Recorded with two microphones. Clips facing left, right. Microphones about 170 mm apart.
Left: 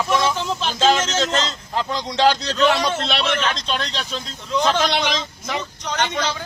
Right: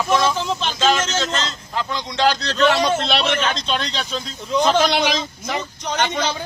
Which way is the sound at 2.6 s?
Centre (ahead or behind).